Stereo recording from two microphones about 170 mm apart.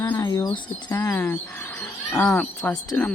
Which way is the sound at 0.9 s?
15° left (ahead or behind).